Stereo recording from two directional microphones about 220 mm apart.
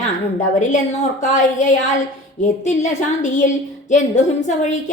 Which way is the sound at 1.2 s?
35° left (ahead or behind).